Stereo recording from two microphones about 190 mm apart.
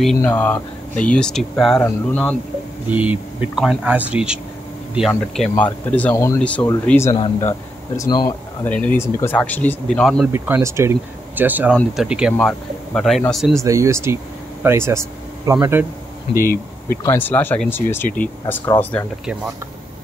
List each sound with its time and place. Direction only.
0.0 s speech: 5° left (ahead or behind)
2.9 s speech: 10° right (ahead or behind); by 7.2 s 15° left (ahead or behind)
7.2 s speech: 30° left (ahead or behind)
8.6 s speech: 10° left (ahead or behind)
10.3 s speech: 10° right (ahead or behind)
13.6 s speech: 15° right (ahead or behind)
16.3 s speech: 50° left (ahead or behind)
17.0 s speech: 10° left (ahead or behind)